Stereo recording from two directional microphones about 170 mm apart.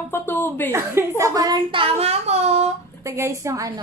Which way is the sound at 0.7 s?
15° right (ahead or behind).